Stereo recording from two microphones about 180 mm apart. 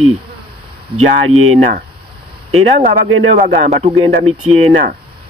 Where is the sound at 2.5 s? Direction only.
45° right (ahead or behind).